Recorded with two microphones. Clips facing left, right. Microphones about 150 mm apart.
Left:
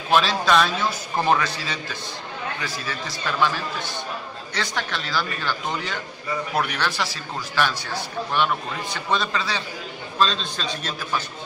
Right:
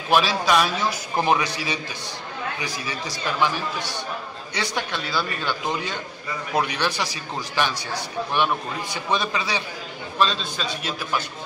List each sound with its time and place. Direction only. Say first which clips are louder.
0.1 s a man's voice: even; 10° right (ahead or behind)